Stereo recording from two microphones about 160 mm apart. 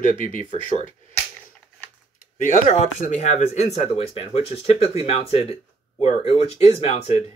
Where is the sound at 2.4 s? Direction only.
50° left (ahead or behind).